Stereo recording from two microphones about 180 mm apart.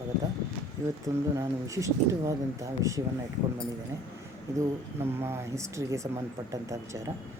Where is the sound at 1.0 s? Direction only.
20° right (ahead or behind).